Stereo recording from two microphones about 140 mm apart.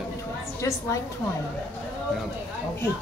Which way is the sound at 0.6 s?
25° left (ahead or behind).